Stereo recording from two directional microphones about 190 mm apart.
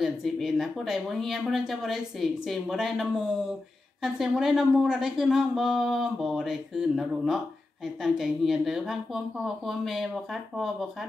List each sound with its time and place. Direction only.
0.0 s speech: centre (ahead or behind)